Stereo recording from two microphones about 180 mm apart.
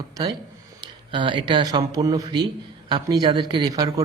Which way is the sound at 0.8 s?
25° right (ahead or behind).